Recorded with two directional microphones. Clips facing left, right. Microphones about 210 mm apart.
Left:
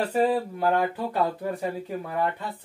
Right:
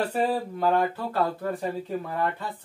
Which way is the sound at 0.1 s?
10° left (ahead or behind).